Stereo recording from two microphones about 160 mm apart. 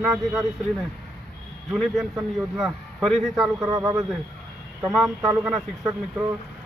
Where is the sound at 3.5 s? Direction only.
25° right (ahead or behind).